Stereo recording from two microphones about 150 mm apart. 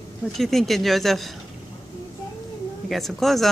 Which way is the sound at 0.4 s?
Centre (ahead or behind).